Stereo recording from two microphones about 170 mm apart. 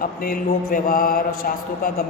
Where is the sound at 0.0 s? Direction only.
55° left (ahead or behind).